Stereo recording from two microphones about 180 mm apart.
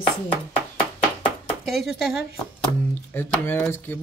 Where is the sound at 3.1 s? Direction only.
10° left (ahead or behind).